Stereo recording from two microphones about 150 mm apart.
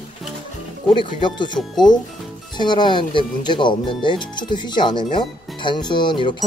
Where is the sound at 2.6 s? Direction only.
30° left (ahead or behind).